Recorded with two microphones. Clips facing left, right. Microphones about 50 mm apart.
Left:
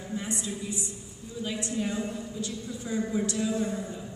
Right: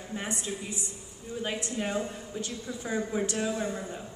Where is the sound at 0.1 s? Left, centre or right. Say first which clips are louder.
Left 1 dB; right.